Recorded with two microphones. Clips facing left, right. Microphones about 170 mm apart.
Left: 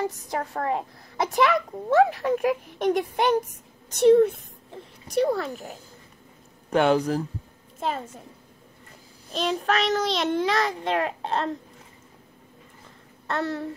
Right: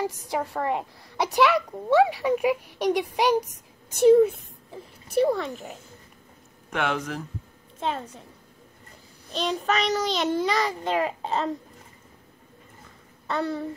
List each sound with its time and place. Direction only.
0.0 s a child's voice: centre (ahead or behind)
6.7 s speech: 35° left (ahead or behind)
7.8 s a child's voice: 5° left (ahead or behind)
9.3 s a child's voice: centre (ahead or behind)
13.3 s a child's voice: centre (ahead or behind)